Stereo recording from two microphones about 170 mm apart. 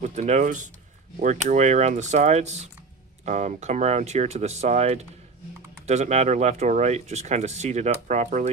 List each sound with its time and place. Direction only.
0.0 s speech: 45° right (ahead or behind)